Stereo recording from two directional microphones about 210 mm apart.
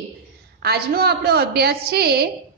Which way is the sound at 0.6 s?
50° right (ahead or behind).